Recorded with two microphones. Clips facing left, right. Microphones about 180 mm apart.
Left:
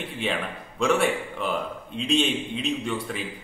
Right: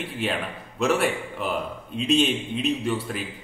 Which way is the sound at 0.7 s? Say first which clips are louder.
Even; 5° right (ahead or behind).